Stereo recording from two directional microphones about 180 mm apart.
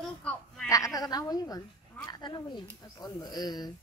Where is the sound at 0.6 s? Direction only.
20° left (ahead or behind).